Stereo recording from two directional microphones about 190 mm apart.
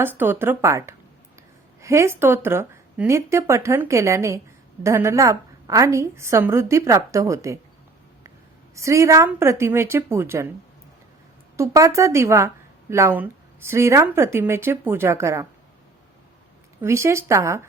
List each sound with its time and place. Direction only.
0.0 s a woman's voice: 10° right (ahead or behind)
8.7 s a woman's voice: 15° right (ahead or behind)
11.5 s a woman's voice: 15° right (ahead or behind)
16.8 s a woman's voice: 15° right (ahead or behind)